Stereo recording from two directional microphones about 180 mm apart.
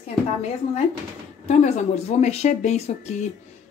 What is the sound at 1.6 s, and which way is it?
Speech, 40° left (ahead or behind).